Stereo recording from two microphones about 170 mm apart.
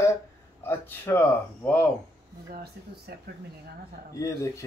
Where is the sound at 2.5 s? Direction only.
65° right (ahead or behind).